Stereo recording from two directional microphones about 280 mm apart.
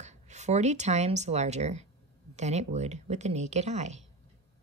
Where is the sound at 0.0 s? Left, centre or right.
Right.